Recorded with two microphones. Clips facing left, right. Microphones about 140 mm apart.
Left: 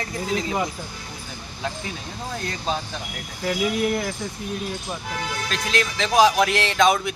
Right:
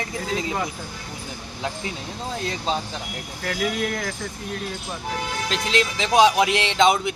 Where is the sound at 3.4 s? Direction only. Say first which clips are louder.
Left 3 dB; 10° left (ahead or behind).